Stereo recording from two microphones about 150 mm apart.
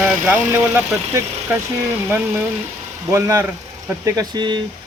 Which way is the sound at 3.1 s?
20° right (ahead or behind).